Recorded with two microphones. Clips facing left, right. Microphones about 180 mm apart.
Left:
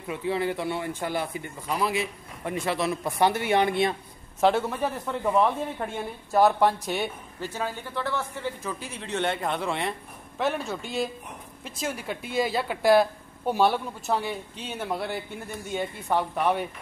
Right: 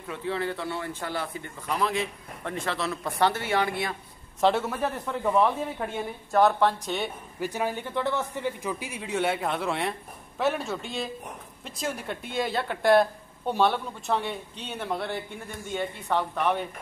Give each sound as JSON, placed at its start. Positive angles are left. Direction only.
{"t": 0.1, "sound": "speech", "side_deg": 15}
{"t": 4.4, "sound": "speech", "side_deg": 0}
{"t": 7.3, "sound": "a man's voice", "side_deg": -15}